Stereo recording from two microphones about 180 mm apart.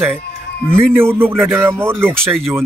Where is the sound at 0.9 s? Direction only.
15° right (ahead or behind).